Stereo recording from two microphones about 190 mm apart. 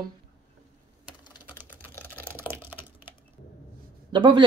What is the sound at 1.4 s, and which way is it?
Typing, 10° right (ahead or behind).